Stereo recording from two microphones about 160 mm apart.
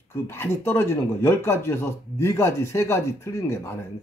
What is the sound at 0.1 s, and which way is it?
Speech, 15° left (ahead or behind).